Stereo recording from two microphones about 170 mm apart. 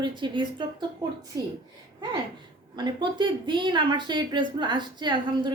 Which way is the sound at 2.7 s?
25° right (ahead or behind).